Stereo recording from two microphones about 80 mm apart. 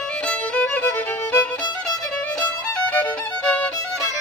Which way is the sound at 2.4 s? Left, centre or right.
Centre.